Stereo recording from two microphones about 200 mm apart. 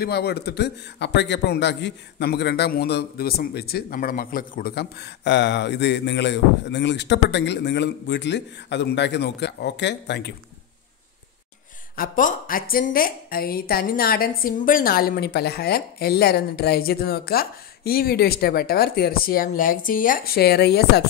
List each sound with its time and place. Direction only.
0.0 s a man's voice: 55° left (ahead or behind)
11.9 s a woman's voice: 45° left (ahead or behind)